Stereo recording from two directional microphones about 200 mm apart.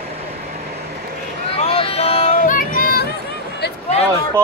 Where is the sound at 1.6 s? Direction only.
30° left (ahead or behind); by 3.1 s 45° left (ahead or behind).